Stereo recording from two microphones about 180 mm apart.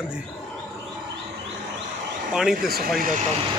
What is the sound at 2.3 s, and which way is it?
Speech, 5° right (ahead or behind).